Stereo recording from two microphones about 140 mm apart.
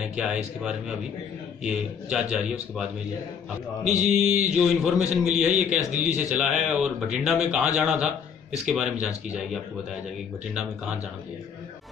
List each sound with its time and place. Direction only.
0.0 s speech: 5° right (ahead or behind)
3.8 s mantra: 55° right (ahead or behind)
4.6 s speech: 5° right (ahead or behind)